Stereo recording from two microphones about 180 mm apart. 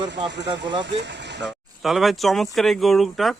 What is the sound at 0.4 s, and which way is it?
Speech, 25° right (ahead or behind).